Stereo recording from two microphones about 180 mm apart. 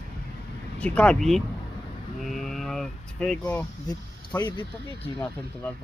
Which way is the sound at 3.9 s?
25° left (ahead or behind).